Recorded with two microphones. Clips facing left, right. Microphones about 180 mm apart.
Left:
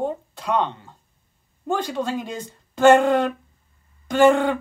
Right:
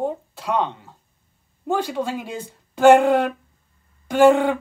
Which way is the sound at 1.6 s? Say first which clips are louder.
Right 1 dB; 10° right (ahead or behind).